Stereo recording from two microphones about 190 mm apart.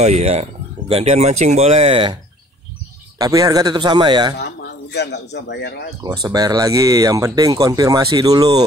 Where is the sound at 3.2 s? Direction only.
20° right (ahead or behind).